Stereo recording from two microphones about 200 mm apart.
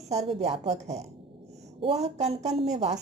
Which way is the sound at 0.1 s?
30° right (ahead or behind).